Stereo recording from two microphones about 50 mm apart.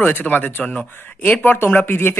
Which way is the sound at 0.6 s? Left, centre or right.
Left.